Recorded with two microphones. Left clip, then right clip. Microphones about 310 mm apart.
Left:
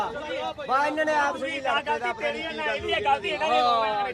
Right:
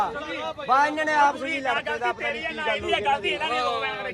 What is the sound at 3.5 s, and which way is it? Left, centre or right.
Speech, centre.